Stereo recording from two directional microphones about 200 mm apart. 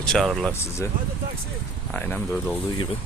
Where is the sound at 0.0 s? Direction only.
Centre (ahead or behind).